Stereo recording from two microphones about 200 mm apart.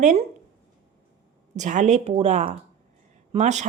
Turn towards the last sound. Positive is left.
turn(degrees=-35)  # may be behind; listen again after turning